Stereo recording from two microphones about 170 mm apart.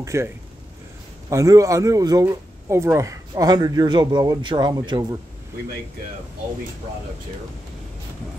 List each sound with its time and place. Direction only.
0.0 s speech: 15° right (ahead or behind)
1.3 s speech: 20° right (ahead or behind)